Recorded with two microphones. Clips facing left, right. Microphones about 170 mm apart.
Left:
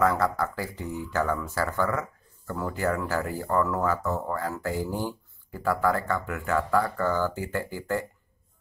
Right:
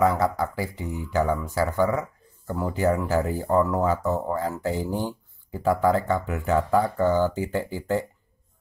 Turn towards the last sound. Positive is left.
turn(degrees=-20)  # may be behind; listen again after turning